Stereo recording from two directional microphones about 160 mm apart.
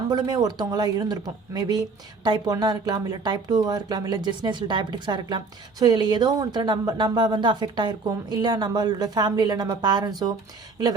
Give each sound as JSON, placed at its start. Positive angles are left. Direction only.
{"t": 0.1, "sound": "speech", "side_deg": -25}